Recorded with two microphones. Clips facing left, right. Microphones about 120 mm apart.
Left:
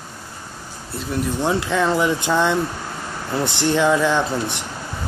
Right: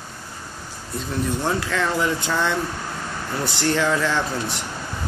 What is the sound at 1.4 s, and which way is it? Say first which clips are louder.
Speech: left 6 dB; 20° left (ahead or behind).